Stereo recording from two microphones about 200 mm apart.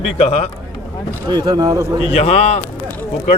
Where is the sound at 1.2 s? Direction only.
20° right (ahead or behind).